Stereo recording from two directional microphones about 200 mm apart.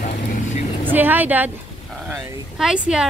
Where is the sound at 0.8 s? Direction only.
10° right (ahead or behind).